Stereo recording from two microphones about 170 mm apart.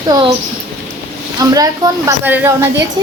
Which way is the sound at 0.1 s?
25° right (ahead or behind).